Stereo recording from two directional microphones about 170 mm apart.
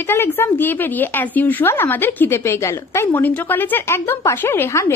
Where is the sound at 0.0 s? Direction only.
15° left (ahead or behind).